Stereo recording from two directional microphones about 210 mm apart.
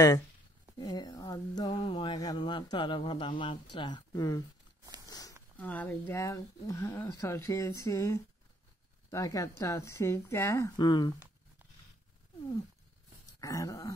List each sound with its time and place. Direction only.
0.7 s a sound: 20° left (ahead or behind)
5.6 s speech: 10° left (ahead or behind)
13.4 s speech: 15° left (ahead or behind)